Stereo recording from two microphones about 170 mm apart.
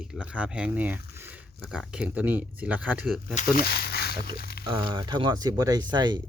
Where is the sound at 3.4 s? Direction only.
65° left (ahead or behind).